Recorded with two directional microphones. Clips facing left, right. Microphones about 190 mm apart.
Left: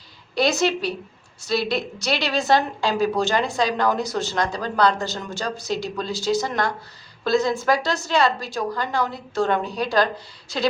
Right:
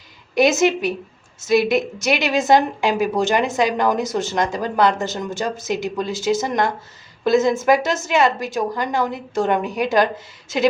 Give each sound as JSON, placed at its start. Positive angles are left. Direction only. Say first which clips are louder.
{"t": 0.3, "sound": "a woman's voice", "louder": "right 5 dB", "side_deg": -20}